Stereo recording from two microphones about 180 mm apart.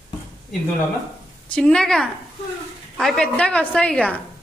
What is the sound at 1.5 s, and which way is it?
A man's voice, 5° left (ahead or behind).